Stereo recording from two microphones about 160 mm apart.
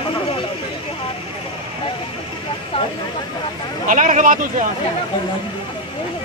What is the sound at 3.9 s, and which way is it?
Speech, 55° right (ahead or behind).